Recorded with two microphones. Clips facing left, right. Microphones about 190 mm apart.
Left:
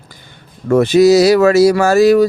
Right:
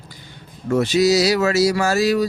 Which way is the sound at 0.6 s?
55° left (ahead or behind).